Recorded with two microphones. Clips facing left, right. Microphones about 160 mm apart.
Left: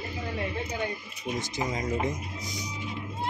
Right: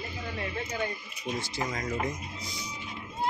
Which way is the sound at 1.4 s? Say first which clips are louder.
Left 4 dB; 20° left (ahead or behind).